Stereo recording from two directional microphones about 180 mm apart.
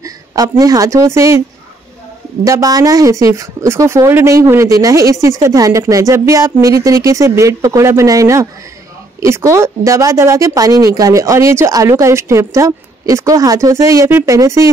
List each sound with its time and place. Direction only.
0.0 s speech: 20° right (ahead or behind)
2.4 s speech: 20° right (ahead or behind)